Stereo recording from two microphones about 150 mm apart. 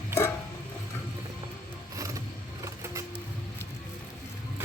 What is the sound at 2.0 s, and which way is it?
Vehicle, 20° right (ahead or behind).